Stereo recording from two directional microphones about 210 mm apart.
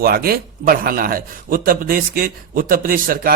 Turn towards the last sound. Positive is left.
turn(degrees=-40)  # may be behind; listen again after turning